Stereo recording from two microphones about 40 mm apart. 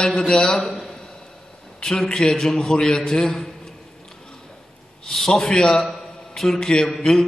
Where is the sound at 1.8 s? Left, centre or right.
Centre.